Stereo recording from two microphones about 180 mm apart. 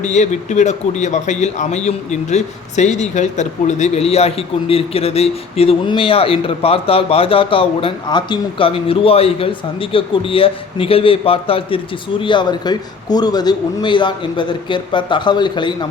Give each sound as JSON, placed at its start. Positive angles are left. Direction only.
{"t": 0.0, "sound": "a man's voice", "side_deg": 40}